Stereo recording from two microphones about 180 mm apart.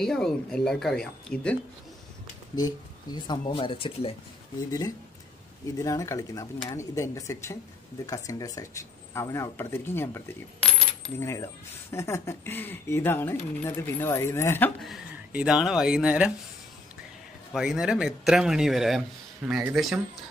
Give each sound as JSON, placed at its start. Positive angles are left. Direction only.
{"t": 0.0, "sound": "speech", "side_deg": 5}
{"t": 2.5, "sound": "speech", "side_deg": 20}
{"t": 4.6, "sound": "speech", "side_deg": 20}
{"t": 14.8, "sound": "speech", "side_deg": 0}
{"t": 17.5, "sound": "speech", "side_deg": 0}